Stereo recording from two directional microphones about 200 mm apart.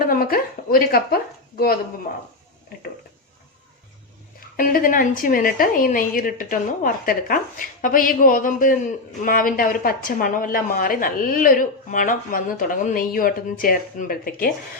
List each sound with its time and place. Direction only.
0.0 s a sound: 45° left (ahead or behind)
2.1 s speech: 45° left (ahead or behind)
4.4 s speech: 45° left (ahead or behind)